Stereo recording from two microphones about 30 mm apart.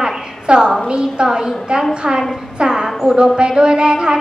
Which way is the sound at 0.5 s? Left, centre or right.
Right.